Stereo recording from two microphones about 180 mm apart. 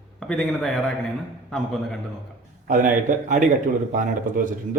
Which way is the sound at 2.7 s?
45° right (ahead or behind).